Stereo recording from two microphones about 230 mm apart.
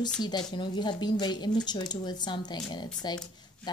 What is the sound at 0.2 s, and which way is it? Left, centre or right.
A woman's voice, centre.